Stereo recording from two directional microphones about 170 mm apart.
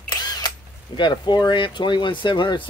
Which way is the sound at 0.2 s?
25° left (ahead or behind).